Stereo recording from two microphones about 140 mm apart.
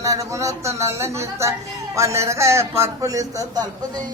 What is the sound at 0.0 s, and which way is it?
A man's voice, 20° right (ahead or behind).